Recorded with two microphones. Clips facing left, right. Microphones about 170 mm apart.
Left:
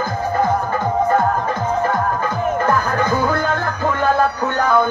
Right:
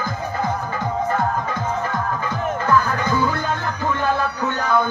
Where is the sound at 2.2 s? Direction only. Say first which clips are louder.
Left 3 dB; 50° left (ahead or behind).